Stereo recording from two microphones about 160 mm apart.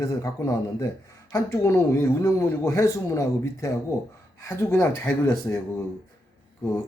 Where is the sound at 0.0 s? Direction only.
20° left (ahead or behind).